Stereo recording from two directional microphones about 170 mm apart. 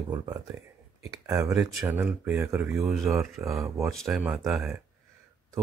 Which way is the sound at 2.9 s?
Centre (ahead or behind).